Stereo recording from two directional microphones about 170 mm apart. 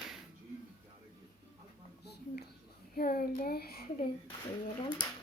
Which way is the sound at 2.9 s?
60° left (ahead or behind).